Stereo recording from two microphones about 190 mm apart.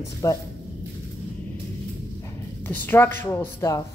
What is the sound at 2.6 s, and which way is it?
A woman's voice, 10° left (ahead or behind).